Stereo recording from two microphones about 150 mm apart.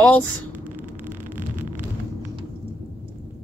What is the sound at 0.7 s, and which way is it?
Vehicle, 10° right (ahead or behind).